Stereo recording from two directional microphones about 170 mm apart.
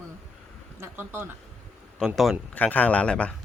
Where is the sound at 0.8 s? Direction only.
15° right (ahead or behind).